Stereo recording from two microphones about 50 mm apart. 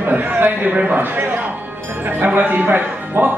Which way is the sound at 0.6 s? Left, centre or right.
Right.